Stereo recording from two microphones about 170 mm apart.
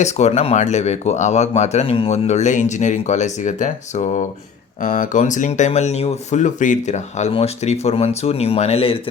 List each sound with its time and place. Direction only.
0.0 s speech: 40° left (ahead or behind)